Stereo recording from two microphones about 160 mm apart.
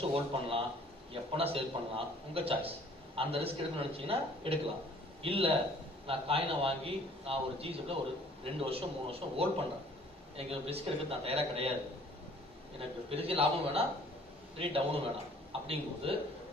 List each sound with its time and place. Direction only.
0.0 s a man's voice: 35° right (ahead or behind)
12.7 s a man's voice: 35° right (ahead or behind)